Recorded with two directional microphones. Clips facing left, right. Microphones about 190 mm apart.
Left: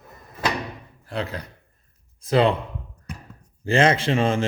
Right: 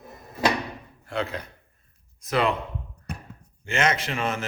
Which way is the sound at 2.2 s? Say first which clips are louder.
Left 5 dB; 30° left (ahead or behind).